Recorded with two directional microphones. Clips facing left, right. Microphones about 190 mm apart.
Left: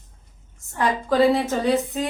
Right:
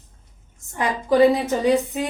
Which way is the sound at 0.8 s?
15° right (ahead or behind).